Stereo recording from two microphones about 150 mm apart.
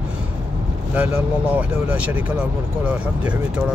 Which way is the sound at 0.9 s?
10° right (ahead or behind).